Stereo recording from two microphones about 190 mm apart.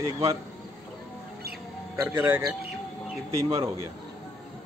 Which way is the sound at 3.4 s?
30° right (ahead or behind).